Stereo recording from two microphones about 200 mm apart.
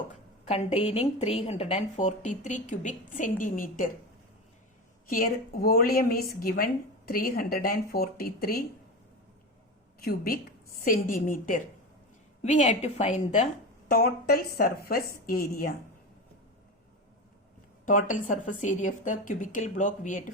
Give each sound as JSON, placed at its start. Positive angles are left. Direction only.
{"t": 0.1, "sound": "a woman's voice", "side_deg": 30}
{"t": 5.0, "sound": "a woman's voice", "side_deg": 45}
{"t": 10.0, "sound": "a woman's voice", "side_deg": 50}
{"t": 17.8, "sound": "a woman's voice", "side_deg": 40}